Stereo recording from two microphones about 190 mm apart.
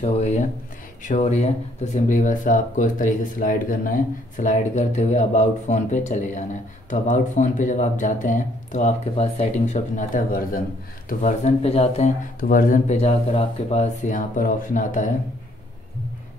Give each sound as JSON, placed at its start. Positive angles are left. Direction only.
{"t": 0.0, "sound": "speech", "side_deg": 35}
{"t": 12.4, "sound": "speech", "side_deg": 45}